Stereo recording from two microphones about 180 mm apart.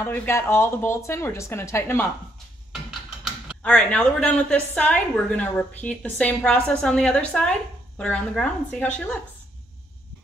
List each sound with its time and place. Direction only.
0.0 s a woman's voice: 10° left (ahead or behind)
3.6 s a woman's voice: 5° left (ahead or behind)